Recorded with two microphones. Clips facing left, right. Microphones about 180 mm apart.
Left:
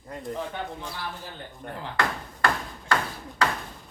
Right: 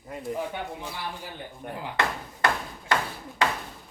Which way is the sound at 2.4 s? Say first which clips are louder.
Even; 20° right (ahead or behind).